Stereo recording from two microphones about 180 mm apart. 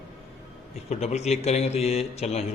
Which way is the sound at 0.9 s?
40° left (ahead or behind).